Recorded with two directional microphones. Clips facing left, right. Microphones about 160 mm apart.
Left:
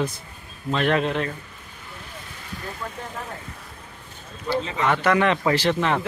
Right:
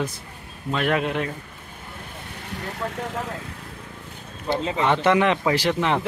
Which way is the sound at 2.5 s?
75° right (ahead or behind).